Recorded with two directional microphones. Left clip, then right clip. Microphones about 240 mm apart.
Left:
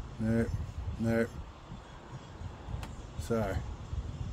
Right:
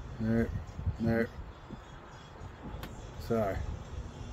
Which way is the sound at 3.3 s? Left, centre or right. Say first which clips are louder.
Right 2 dB; left.